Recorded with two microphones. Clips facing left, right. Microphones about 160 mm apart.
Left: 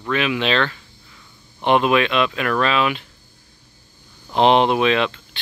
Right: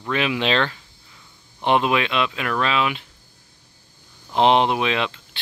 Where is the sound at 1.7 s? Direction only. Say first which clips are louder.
Left 3 dB; 20° right (ahead or behind).